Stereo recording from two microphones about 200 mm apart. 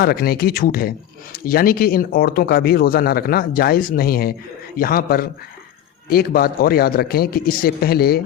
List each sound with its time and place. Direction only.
0.0 s speech: 50° left (ahead or behind)